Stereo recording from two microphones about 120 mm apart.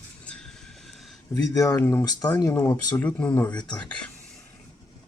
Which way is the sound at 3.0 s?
10° left (ahead or behind).